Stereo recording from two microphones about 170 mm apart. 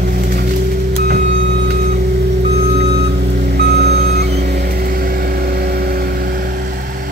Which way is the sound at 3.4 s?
70° right (ahead or behind).